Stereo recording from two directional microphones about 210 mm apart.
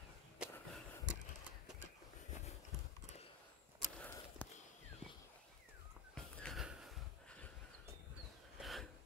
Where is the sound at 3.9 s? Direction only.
10° left (ahead or behind).